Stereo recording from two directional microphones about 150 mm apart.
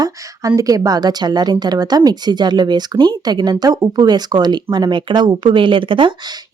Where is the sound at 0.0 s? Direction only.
20° right (ahead or behind).